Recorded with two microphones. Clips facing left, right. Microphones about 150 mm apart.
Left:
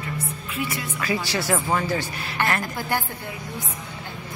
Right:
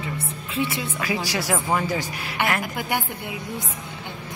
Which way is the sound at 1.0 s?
10° right (ahead or behind).